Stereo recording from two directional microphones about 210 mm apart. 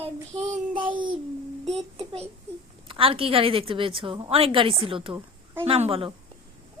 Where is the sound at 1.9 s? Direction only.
30° right (ahead or behind).